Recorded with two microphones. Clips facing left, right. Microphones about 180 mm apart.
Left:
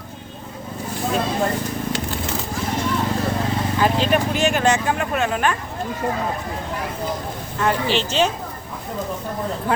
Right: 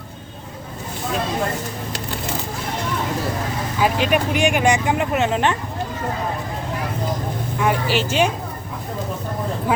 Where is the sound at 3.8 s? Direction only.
15° right (ahead or behind).